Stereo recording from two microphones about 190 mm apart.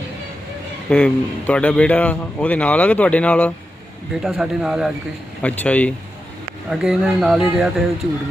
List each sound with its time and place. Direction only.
0.9 s a man's voice: 5° left (ahead or behind)